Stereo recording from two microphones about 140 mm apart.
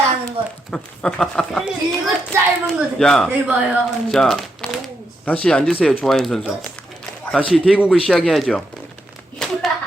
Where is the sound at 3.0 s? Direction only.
5° left (ahead or behind).